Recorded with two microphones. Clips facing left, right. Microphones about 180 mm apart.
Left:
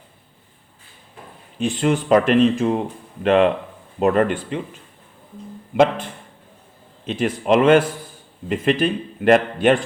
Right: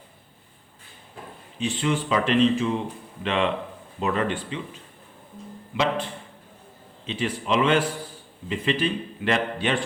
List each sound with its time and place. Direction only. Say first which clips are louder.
1.5 s speech: left 5 dB; 50° left (ahead or behind)
5.7 s speech: left 8 dB; 50° left (ahead or behind)